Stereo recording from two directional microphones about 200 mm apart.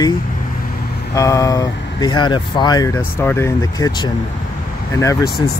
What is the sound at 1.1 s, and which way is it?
Speech, 15° left (ahead or behind).